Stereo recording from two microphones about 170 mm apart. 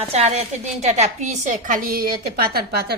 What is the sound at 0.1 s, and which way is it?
A woman's voice, 40° right (ahead or behind).